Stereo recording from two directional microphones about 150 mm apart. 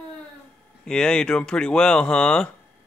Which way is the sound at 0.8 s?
5° left (ahead or behind).